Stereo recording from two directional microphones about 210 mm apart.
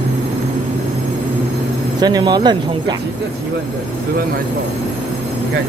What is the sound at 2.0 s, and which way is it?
Speech, 20° right (ahead or behind).